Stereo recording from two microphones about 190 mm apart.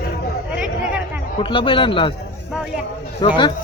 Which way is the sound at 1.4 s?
25° left (ahead or behind).